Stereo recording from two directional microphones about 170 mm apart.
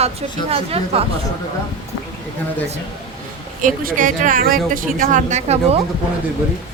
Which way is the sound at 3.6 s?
50° right (ahead or behind).